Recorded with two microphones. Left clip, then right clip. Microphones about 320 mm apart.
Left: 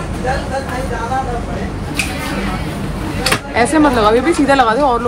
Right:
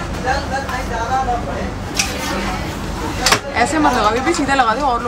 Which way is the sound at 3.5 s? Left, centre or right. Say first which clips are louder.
Left 3 dB; centre.